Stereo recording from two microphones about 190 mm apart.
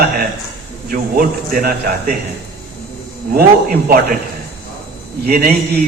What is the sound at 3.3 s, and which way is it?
Speech, 55° right (ahead or behind).